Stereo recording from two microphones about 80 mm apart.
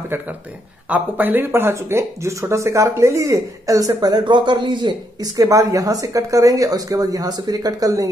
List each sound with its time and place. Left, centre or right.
0.8 s speech: centre; by 5.3 s right
5.4 s speech: right